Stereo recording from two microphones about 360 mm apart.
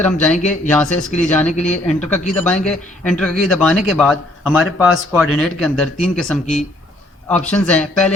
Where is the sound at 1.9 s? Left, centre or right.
Centre.